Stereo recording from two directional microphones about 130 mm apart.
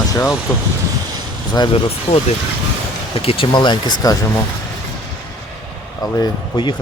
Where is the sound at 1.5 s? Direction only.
40° left (ahead or behind).